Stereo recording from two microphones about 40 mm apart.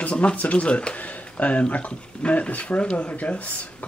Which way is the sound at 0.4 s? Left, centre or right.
Left.